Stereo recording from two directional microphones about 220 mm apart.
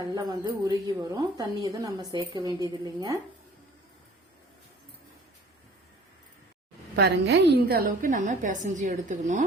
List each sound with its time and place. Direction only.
0.1 s a woman's voice: 15° right (ahead or behind)
6.9 s a woman's voice: 50° right (ahead or behind)